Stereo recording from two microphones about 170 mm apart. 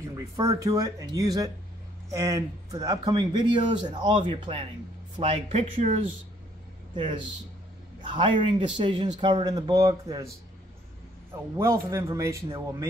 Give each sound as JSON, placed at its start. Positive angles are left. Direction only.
{"t": 0.1, "sound": "a man's voice", "side_deg": -20}
{"t": 7.0, "sound": "a man's voice", "side_deg": -30}
{"t": 11.5, "sound": "a man's voice", "side_deg": -15}